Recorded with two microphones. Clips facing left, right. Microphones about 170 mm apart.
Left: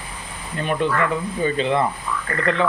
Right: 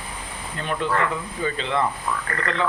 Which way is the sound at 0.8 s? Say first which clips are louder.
Left 2 dB; 15° left (ahead or behind).